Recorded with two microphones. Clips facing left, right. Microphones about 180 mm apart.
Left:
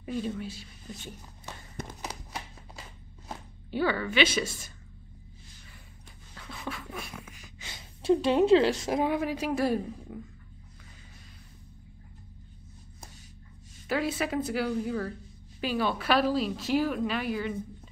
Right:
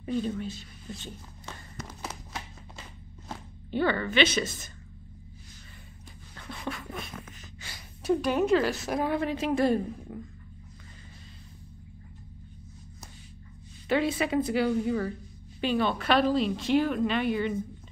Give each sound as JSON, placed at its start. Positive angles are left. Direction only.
{"t": 0.0, "sound": "a woman's voice", "side_deg": 5}
{"t": 3.3, "sound": "zipper", "side_deg": 5}
{"t": 6.3, "sound": "a sound", "side_deg": 0}
{"t": 7.6, "sound": "a woman's voice", "side_deg": 20}
{"t": 9.2, "sound": "a woman's voice", "side_deg": 5}
{"t": 13.8, "sound": "a woman's voice", "side_deg": 5}